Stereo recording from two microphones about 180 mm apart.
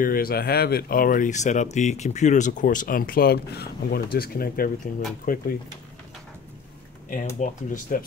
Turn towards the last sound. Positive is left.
turn(degrees=45)  # may be behind; listen again after turning